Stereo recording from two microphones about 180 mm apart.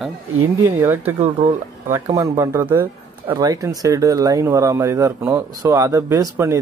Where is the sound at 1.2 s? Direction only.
35° right (ahead or behind).